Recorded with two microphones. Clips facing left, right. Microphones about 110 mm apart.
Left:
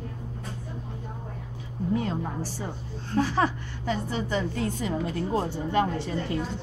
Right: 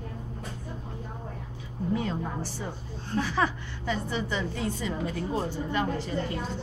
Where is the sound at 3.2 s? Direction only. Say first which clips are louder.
Left 3 dB; 40° left (ahead or behind); by 6.1 s 70° left (ahead or behind).